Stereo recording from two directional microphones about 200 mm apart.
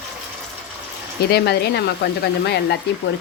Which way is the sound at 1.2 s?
55° left (ahead or behind).